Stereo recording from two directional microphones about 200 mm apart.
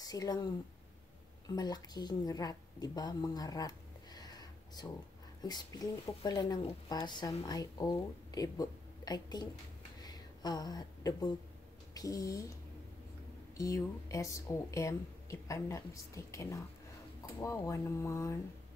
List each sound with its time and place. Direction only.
0.0 s speech: 20° left (ahead or behind)
1.5 s a woman's voice: 20° left (ahead or behind)
10.0 s a sound: 20° left (ahead or behind)
11.9 s speech: 15° left (ahead or behind)
13.6 s speech: 15° left (ahead or behind)